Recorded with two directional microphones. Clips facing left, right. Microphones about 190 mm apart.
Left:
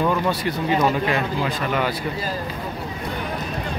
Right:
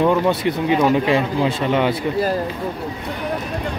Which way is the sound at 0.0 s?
20° right (ahead or behind).